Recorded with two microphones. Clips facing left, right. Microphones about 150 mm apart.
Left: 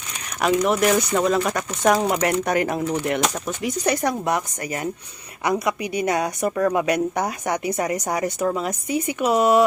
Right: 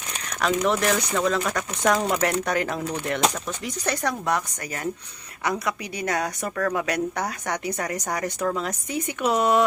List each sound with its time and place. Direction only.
0.4 s a woman's voice: 15° left (ahead or behind)